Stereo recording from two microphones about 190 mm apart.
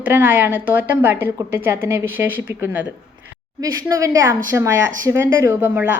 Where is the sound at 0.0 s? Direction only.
10° right (ahead or behind).